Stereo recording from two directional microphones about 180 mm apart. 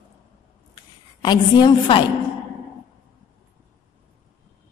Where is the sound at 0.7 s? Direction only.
25° left (ahead or behind).